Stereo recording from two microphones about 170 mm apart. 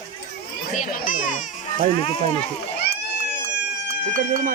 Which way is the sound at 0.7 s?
50° left (ahead or behind).